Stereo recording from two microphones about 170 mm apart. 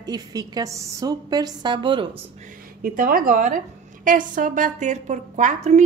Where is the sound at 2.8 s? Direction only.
55° right (ahead or behind).